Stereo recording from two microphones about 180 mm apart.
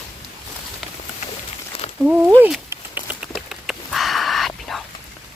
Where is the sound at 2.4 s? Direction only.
10° right (ahead or behind).